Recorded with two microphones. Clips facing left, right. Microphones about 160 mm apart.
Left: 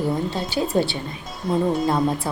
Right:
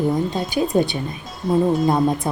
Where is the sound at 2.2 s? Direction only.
20° right (ahead or behind).